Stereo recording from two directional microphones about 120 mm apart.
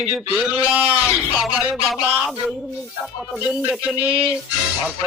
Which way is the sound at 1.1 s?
5° right (ahead or behind).